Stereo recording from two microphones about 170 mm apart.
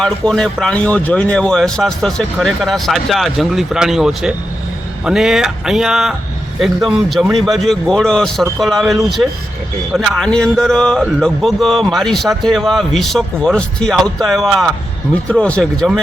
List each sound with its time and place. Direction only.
0.0 s speech: 5° left (ahead or behind)